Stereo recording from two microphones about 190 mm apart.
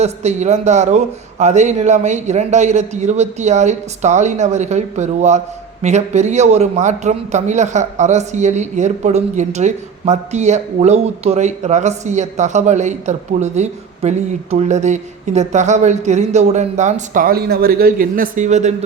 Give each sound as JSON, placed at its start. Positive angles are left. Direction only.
{"t": 0.0, "sound": "a man's voice", "side_deg": -35}